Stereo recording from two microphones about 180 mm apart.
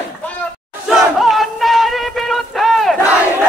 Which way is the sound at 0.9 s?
Centre (ahead or behind).